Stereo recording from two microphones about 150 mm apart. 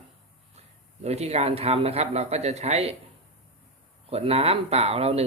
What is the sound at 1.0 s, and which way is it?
Speech, 45° right (ahead or behind).